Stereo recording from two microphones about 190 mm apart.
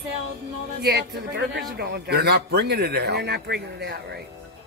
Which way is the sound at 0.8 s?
60° right (ahead or behind).